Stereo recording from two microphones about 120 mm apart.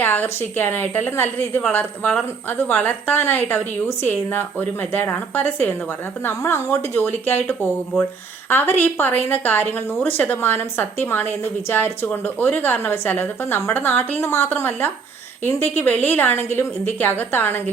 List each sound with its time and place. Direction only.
0.0 s a woman's voice: 15° left (ahead or behind)